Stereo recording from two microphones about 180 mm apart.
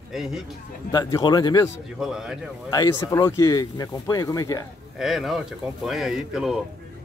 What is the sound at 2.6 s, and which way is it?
Speech, 20° left (ahead or behind).